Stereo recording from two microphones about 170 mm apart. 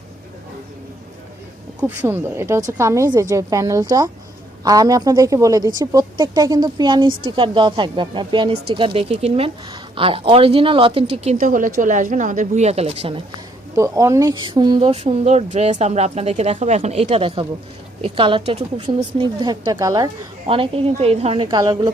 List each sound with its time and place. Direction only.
1.8 s a woman's voice: 10° right (ahead or behind); by 13.2 s 35° right (ahead or behind)
13.7 s a woman's voice: 20° right (ahead or behind)
20.5 s speech: 35° right (ahead or behind)